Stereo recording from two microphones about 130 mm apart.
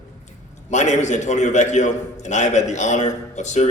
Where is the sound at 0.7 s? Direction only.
65° left (ahead or behind).